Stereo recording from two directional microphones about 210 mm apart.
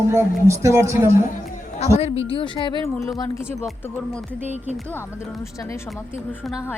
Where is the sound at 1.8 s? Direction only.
30° left (ahead or behind).